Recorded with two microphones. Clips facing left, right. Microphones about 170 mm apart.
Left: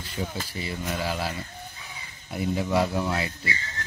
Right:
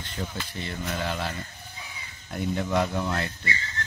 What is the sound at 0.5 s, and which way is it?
Speech, 5° left (ahead or behind).